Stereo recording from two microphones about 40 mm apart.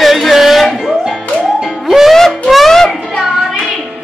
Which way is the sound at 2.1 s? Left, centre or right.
Centre.